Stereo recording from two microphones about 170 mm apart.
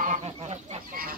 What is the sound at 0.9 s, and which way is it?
Chicken, 60° right (ahead or behind).